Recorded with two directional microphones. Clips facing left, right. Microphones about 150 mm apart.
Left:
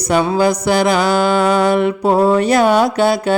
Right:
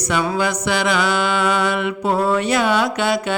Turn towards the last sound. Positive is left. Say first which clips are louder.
# left 5 dB
turn(degrees=40)  # may be behind; listen again after turning